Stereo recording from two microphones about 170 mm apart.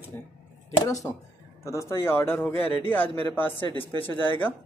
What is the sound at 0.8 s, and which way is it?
Speech, 20° left (ahead or behind).